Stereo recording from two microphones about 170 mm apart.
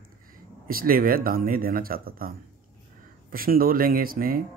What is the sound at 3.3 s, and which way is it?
Speech, 60° right (ahead or behind).